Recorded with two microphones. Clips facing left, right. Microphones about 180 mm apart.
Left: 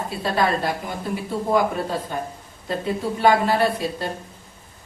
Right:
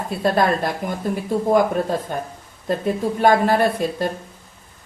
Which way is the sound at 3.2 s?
50° right (ahead or behind).